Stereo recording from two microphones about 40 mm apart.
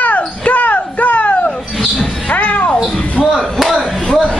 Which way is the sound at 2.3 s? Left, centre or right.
Left.